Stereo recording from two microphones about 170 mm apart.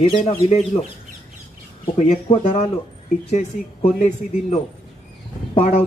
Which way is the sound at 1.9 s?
40° left (ahead or behind).